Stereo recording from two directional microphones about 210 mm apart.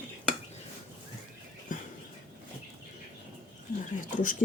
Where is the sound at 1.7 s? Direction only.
40° left (ahead or behind).